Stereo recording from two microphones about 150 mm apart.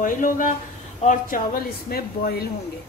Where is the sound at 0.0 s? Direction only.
60° left (ahead or behind); by 2.4 s 85° left.